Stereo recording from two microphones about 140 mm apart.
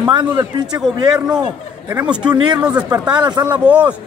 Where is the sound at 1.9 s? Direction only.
10° right (ahead or behind).